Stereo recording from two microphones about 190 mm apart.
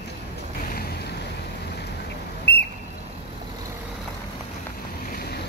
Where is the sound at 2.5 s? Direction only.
60° left (ahead or behind).